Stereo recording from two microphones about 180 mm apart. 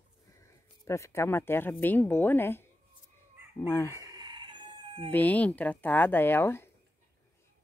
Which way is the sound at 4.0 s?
20° right (ahead or behind).